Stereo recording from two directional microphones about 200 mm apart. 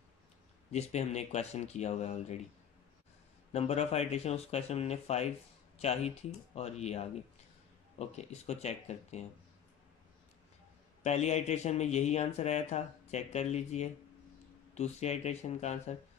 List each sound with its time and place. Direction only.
0.7 s a man's voice: 35° left (ahead or behind)
3.5 s a man's voice: 30° left (ahead or behind)
11.1 s a man's voice: 35° left (ahead or behind)